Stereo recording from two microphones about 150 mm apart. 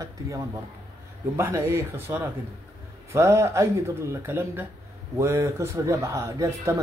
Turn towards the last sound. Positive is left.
turn(degrees=-20)  # may be behind; listen again after turning